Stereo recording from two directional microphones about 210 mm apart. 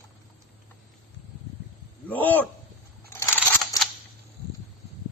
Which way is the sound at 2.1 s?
10° left (ahead or behind).